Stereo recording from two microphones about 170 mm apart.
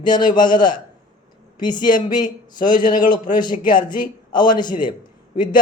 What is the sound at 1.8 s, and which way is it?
Speech, 50° left (ahead or behind).